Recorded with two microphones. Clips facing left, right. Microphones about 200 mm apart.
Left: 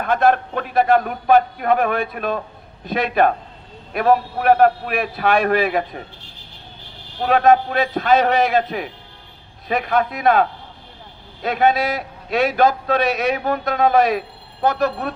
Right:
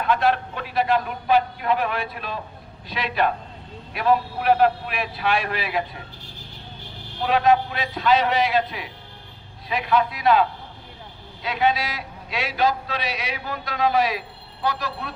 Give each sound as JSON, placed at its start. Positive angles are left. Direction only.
{"t": 0.0, "sound": "a man's voice", "side_deg": 50}
{"t": 7.2, "sound": "a man's voice", "side_deg": 50}